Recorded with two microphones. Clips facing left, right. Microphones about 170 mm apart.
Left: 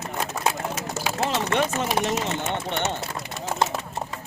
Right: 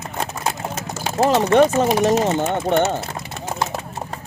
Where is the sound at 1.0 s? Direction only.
40° right (ahead or behind).